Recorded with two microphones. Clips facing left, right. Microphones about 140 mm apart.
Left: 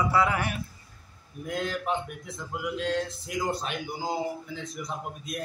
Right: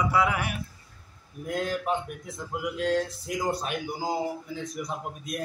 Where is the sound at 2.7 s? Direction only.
45° right (ahead or behind).